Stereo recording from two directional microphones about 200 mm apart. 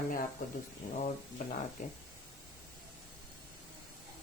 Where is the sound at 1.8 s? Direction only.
40° left (ahead or behind).